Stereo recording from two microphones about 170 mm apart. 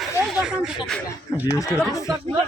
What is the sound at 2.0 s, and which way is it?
Speech, 30° right (ahead or behind).